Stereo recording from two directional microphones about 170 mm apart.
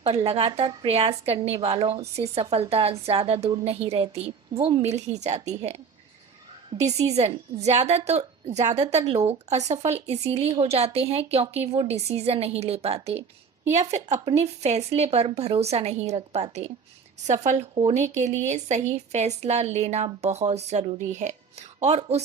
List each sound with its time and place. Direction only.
0.0 s a woman's voice: 35° right (ahead or behind)
7.0 s a woman's voice: 40° right (ahead or behind)